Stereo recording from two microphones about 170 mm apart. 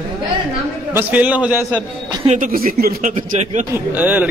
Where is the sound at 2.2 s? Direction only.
55° right (ahead or behind).